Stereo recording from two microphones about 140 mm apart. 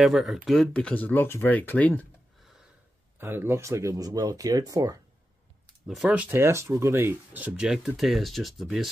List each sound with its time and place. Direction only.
0.0 s speech: centre (ahead or behind)
3.2 s speech: 15° right (ahead or behind)
5.9 s speech: 5° right (ahead or behind)